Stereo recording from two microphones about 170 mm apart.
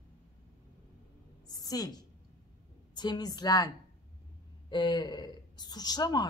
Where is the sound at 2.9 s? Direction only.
25° left (ahead or behind).